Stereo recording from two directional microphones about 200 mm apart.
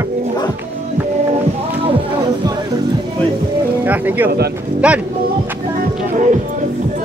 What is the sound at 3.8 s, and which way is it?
Music, 10° right (ahead or behind).